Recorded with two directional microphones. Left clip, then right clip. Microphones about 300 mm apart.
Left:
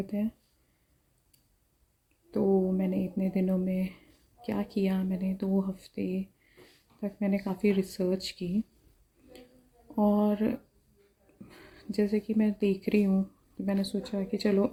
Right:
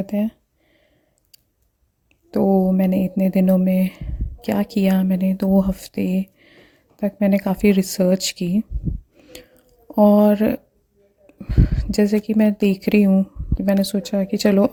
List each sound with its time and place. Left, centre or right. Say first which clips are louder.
0.1 s speech: right 11 dB; right
2.3 s speech: right 9 dB; right
9.9 s speech: right 14 dB; right